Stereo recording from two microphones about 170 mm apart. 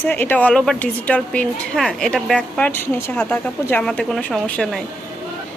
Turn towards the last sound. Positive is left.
turn(degrees=5)  # may be behind; listen again after turning